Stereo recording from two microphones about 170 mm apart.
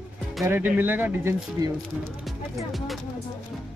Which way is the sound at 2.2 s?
Centre (ahead or behind).